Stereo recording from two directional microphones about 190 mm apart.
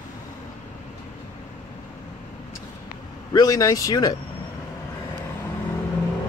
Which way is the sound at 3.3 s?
20° left (ahead or behind).